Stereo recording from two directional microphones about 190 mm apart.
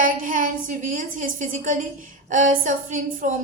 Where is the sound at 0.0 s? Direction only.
45° right (ahead or behind).